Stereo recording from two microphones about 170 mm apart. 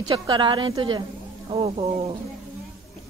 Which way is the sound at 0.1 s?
30° right (ahead or behind).